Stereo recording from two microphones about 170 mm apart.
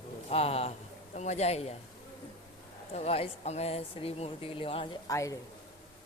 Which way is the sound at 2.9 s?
35° left (ahead or behind).